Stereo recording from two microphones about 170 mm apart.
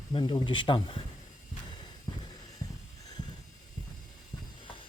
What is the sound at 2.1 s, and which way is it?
Music, 25° left (ahead or behind).